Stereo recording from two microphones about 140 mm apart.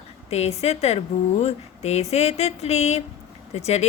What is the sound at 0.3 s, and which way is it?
A woman's voice, 50° left (ahead or behind).